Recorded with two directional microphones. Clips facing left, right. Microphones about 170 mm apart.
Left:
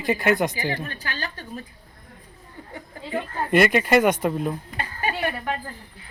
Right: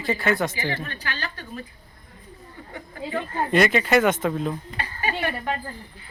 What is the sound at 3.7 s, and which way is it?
Speech, 10° left (ahead or behind).